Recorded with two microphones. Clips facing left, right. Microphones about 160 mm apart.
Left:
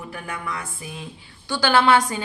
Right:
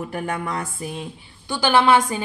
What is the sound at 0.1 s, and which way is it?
Music, 40° right (ahead or behind).